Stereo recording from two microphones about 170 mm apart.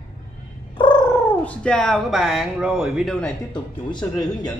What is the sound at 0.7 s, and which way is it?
Purr, 30° left (ahead or behind).